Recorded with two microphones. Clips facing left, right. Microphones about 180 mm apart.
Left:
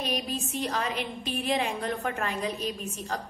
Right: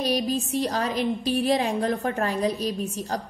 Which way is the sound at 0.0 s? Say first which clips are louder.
Right 7 dB; 35° right (ahead or behind).